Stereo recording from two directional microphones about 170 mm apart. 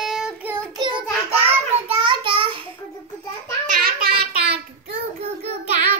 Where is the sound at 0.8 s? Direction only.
25° right (ahead or behind).